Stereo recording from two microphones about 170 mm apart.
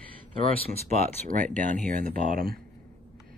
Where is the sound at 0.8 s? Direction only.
45° right (ahead or behind).